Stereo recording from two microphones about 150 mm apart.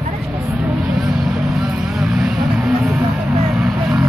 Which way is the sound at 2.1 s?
5° right (ahead or behind).